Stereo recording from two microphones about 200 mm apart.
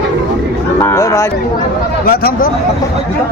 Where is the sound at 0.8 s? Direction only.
15° left (ahead or behind).